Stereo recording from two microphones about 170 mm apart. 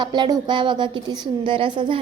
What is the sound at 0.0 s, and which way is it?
A woman's voice, 25° right (ahead or behind).